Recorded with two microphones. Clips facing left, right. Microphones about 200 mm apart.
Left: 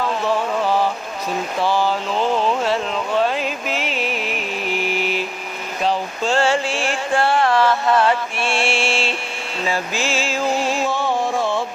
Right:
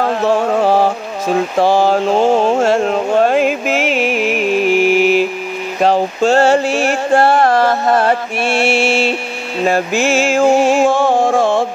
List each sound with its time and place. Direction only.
0.0 s music: 50° right (ahead or behind)
1.6 s a sound: 45° right (ahead or behind)
3.4 s music: 85° right
4.1 s music: 10° right (ahead or behind)
5.8 s a sound: 60° right (ahead or behind)
6.3 s music: 45° right (ahead or behind)
9.7 s music: 60° right (ahead or behind); by 10.4 s 75° right (ahead or behind)
10.4 s a sound: 50° right (ahead or behind)
10.8 s music: 45° right (ahead or behind)